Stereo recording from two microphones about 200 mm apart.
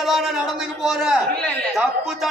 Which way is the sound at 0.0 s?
Centre (ahead or behind).